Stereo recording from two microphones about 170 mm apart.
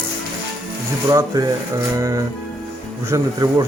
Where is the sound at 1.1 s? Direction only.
20° right (ahead or behind).